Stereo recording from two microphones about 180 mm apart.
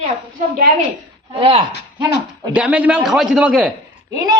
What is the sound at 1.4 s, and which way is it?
Speech, 30° right (ahead or behind).